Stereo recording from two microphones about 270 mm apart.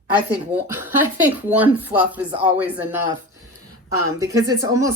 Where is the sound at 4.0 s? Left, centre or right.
Left.